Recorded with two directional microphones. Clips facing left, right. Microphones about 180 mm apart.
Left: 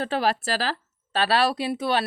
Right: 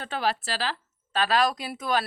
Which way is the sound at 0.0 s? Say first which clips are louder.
Left 4 dB; 35° left (ahead or behind).